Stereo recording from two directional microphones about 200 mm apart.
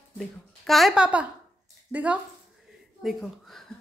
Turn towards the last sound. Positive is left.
turn(degrees=0)  # may be behind; listen again after turning